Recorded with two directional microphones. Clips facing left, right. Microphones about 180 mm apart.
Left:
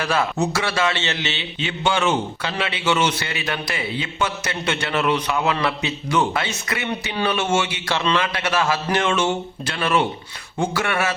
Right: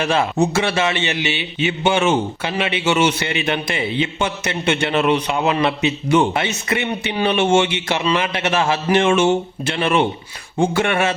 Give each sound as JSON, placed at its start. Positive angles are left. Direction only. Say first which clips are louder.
{"t": 0.0, "sound": "a man's voice", "louder": "right 4 dB", "side_deg": -25}